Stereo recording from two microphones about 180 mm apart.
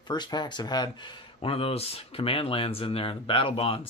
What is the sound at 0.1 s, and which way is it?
Speech, 25° left (ahead or behind).